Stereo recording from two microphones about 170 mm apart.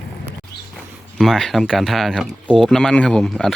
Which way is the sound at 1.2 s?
Centre (ahead or behind).